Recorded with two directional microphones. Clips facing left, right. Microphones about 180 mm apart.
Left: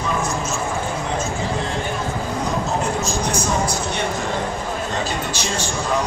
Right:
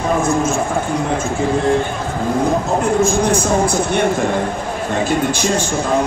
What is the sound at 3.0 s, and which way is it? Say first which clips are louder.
A man's voice: right 8 dB; 55° right (ahead or behind).